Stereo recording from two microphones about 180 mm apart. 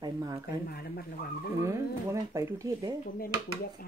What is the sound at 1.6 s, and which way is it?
Speech, 15° right (ahead or behind).